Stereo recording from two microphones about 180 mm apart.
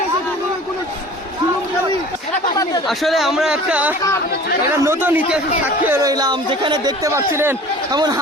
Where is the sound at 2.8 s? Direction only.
Centre (ahead or behind); by 8.2 s 20° right (ahead or behind).